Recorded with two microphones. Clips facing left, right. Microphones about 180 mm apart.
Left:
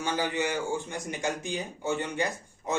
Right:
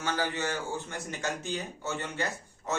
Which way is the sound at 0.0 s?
15° left (ahead or behind).